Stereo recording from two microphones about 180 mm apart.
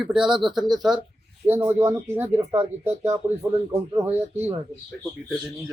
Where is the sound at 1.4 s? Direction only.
15° right (ahead or behind).